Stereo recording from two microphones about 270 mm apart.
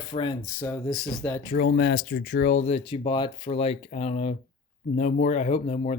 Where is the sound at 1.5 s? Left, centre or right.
Left.